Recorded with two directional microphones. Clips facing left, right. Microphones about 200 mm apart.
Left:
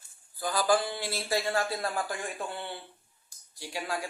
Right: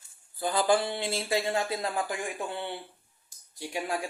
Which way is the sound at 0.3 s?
25° right (ahead or behind).